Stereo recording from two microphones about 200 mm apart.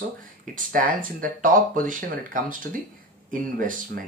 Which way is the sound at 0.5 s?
40° right (ahead or behind).